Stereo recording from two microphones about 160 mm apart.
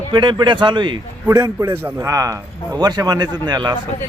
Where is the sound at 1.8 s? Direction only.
15° right (ahead or behind).